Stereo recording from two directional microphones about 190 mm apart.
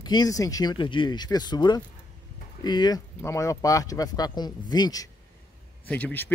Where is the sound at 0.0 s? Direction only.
20° left (ahead or behind).